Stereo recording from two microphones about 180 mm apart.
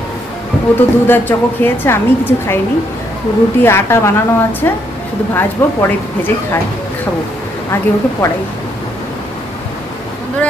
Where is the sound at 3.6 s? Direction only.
15° left (ahead or behind).